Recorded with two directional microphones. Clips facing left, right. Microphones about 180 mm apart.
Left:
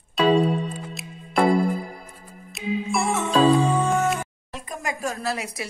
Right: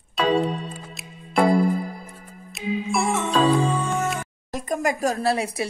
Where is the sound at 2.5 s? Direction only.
Centre (ahead or behind).